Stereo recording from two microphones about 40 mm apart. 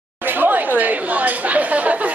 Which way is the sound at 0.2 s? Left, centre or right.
Right.